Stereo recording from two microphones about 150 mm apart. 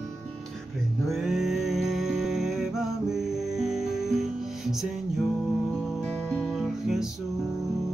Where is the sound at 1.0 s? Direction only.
Centre (ahead or behind).